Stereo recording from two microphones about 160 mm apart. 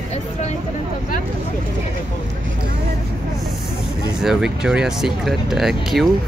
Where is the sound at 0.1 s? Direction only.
45° left (ahead or behind).